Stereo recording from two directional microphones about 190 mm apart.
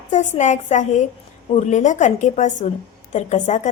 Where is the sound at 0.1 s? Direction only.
40° left (ahead or behind).